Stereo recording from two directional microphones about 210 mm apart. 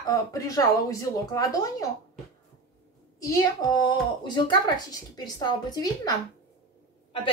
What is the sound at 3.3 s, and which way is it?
Speech, 20° left (ahead or behind).